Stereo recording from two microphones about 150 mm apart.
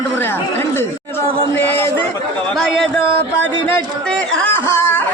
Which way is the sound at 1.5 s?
15° left (ahead or behind).